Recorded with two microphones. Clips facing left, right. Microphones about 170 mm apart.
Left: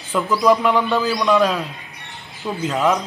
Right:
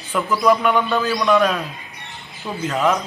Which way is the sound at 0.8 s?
5° left (ahead or behind).